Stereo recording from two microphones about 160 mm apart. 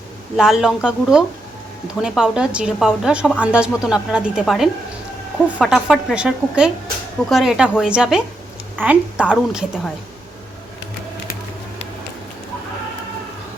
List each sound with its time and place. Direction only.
0.3 s a woman's voice: 5° right (ahead or behind)